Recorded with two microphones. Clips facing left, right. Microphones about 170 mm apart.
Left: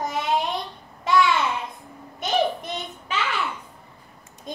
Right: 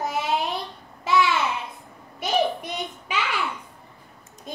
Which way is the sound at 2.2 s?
10° right (ahead or behind).